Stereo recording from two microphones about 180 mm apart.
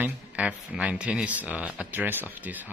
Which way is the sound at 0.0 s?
5° right (ahead or behind).